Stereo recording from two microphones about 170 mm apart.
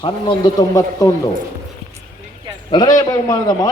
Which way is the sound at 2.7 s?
25° left (ahead or behind).